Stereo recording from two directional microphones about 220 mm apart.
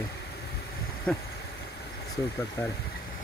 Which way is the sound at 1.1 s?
5° left (ahead or behind).